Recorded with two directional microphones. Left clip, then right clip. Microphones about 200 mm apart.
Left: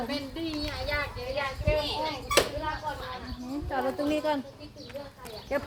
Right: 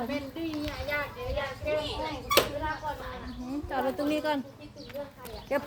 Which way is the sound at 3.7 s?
25° right (ahead or behind).